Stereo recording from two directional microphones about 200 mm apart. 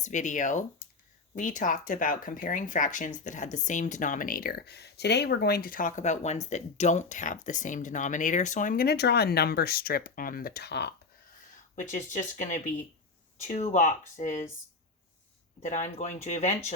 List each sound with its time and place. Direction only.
0.0 s speech: 40° left (ahead or behind); by 10.9 s 55° left (ahead or behind)
11.8 s speech: 40° left (ahead or behind)
15.6 s speech: 35° left (ahead or behind)